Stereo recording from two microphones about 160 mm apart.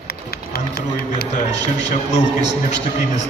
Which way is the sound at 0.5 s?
75° left (ahead or behind).